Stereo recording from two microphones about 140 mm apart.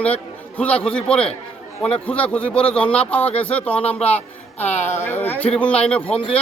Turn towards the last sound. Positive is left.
turn(degrees=10)  # may be behind; listen again after turning